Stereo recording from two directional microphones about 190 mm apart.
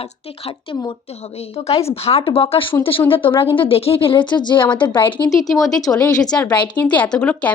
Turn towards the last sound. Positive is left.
turn(degrees=5)  # may be behind; listen again after turning